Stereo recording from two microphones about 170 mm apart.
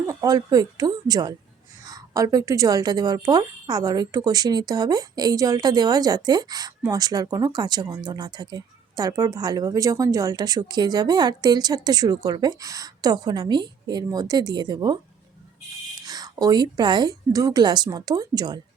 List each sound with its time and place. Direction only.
0.1 s speech: 20° right (ahead or behind)
16.0 s speech: 20° right (ahead or behind)